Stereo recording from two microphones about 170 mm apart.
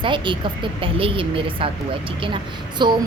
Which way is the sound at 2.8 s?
25° right (ahead or behind).